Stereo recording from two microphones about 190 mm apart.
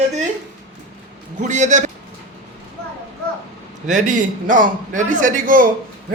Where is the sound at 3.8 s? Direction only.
40° right (ahead or behind).